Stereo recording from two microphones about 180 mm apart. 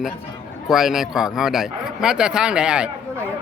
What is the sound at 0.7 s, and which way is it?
A man's voice, centre (ahead or behind).